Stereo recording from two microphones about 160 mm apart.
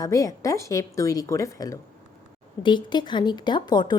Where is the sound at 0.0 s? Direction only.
20° left (ahead or behind).